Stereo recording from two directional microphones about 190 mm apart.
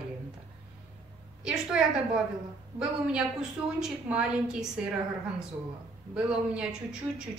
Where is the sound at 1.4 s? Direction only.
5° right (ahead or behind).